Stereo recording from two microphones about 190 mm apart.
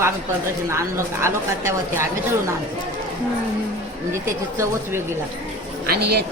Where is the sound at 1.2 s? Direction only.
15° right (ahead or behind).